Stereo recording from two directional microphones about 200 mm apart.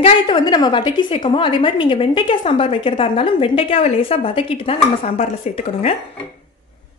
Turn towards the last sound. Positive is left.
turn(degrees=30)  # may be behind; listen again after turning